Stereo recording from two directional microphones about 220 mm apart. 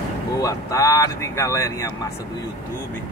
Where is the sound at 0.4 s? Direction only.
15° left (ahead or behind).